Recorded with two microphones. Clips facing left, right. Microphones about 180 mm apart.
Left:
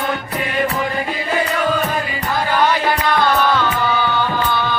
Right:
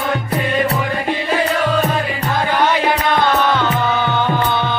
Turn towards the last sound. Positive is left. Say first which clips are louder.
# right 2 dB
turn(degrees=-20)  # may be behind; listen again after turning